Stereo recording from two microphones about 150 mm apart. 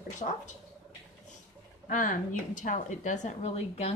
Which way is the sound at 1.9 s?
60° left (ahead or behind).